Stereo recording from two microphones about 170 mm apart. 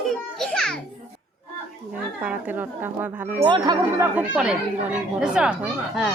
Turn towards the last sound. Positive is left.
turn(degrees=-5)  # may be behind; listen again after turning